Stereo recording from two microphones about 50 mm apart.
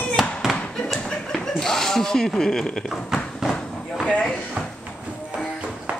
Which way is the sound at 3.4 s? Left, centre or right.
Centre.